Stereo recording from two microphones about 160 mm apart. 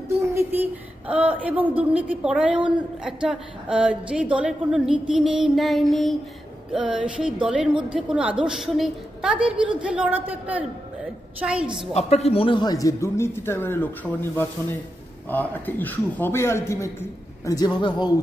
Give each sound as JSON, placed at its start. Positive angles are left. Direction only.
{"t": 0.2, "sound": "a woman's voice", "side_deg": -15}
{"t": 11.9, "sound": "a man's voice", "side_deg": 40}
{"t": 15.2, "sound": "a man's voice", "side_deg": 10}